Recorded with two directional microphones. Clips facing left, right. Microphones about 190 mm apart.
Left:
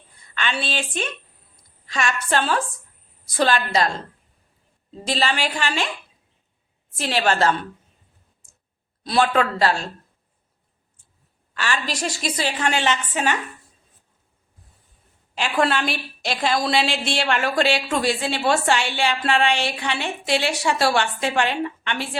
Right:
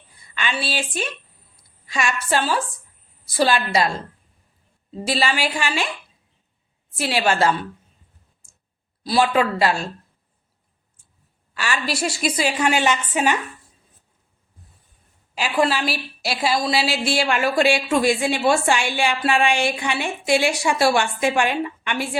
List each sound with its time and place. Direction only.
0.2 s a woman's voice: 10° right (ahead or behind)
1.5 s a sound: 10° right (ahead or behind)
2.3 s a woman's voice: 5° right (ahead or behind)
5.0 s a woman's voice: 10° right (ahead or behind)
6.9 s a woman's voice: 10° right (ahead or behind)
9.0 s a woman's voice: 5° right (ahead or behind)
11.5 s a woman's voice: 10° right (ahead or behind)
15.4 s a woman's voice: 5° right (ahead or behind)